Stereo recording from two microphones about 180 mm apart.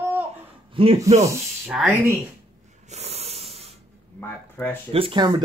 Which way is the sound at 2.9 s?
35° right (ahead or behind).